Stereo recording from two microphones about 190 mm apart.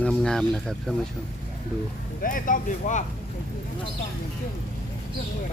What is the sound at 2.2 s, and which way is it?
Speech, 45° left (ahead or behind).